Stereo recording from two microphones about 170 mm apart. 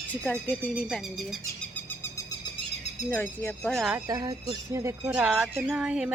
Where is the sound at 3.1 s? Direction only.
15° left (ahead or behind).